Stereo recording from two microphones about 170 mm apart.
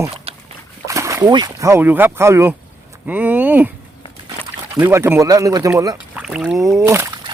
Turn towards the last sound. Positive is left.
turn(degrees=-15)  # may be behind; listen again after turning